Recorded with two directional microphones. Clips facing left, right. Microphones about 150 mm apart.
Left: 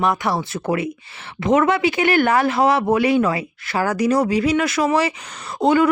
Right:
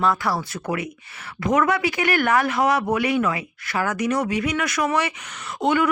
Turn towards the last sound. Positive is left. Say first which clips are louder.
# left 5 dB
turn(degrees=35)  # may be behind; listen again after turning